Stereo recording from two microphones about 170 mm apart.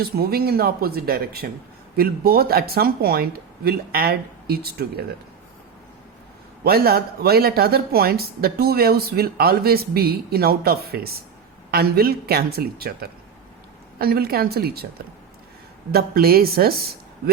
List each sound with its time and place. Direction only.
0.0 s speech: 65° right (ahead or behind)
6.7 s speech: 65° right (ahead or behind)
15.9 s speech: 65° right (ahead or behind)